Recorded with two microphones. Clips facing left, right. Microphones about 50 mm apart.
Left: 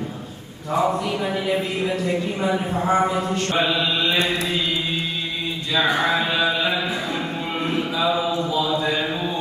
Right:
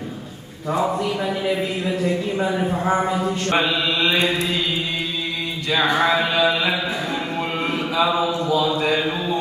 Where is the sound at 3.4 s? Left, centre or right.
Right.